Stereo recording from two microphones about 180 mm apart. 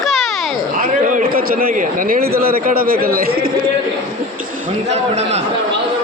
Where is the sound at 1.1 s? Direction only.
50° right (ahead or behind).